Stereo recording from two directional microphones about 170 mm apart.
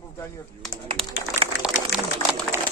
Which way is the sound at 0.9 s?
35° right (ahead or behind).